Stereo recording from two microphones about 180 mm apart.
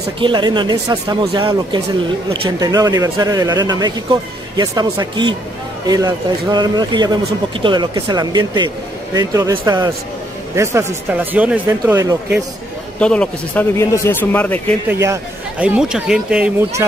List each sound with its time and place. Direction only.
0.2 s speech: 25° right (ahead or behind); by 11.6 s 10° right (ahead or behind)
11.8 s speech: 20° right (ahead or behind)
13.0 s speech: 5° left (ahead or behind)
14.9 s speech: 10° right (ahead or behind)